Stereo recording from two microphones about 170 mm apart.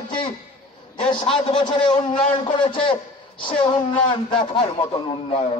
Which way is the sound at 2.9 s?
30° left (ahead or behind).